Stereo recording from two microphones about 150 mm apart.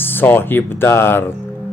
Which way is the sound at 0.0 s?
15° left (ahead or behind).